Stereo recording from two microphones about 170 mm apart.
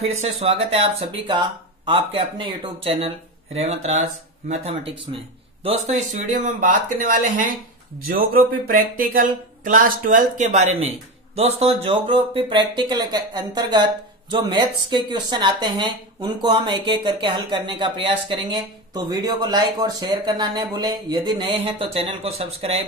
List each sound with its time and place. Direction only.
0.0 s speech: 40° right (ahead or behind)
5.1 s speech: 35° right (ahead or behind)
6.2 s speech: 50° right (ahead or behind)